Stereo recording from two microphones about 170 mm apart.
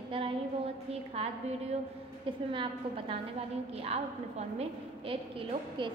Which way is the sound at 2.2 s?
30° right (ahead or behind).